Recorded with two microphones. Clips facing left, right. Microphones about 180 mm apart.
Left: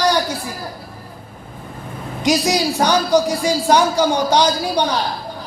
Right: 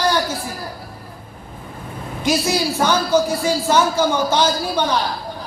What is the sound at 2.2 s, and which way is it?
A man's voice, 15° left (ahead or behind).